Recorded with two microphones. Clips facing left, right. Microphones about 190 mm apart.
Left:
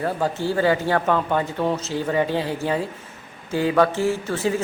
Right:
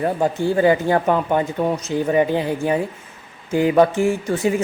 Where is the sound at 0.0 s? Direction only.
20° right (ahead or behind).